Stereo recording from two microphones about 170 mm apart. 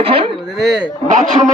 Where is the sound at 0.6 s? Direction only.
Centre (ahead or behind).